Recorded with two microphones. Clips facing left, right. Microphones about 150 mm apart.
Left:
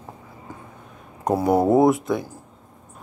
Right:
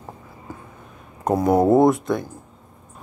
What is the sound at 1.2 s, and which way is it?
Speech, 5° left (ahead or behind).